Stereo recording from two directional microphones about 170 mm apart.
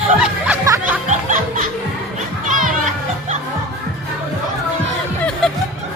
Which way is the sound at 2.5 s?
50° right (ahead or behind).